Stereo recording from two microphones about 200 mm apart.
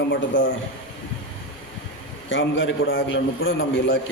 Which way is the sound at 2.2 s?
70° left (ahead or behind).